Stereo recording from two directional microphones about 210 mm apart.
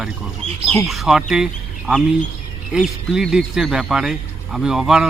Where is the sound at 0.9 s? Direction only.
Centre (ahead or behind).